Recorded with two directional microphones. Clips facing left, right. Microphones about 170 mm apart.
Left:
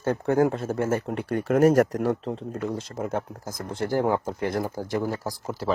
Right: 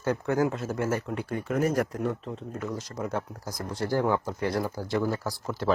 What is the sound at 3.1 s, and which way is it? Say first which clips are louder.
Speech: left 3 dB; 50° left (ahead or behind).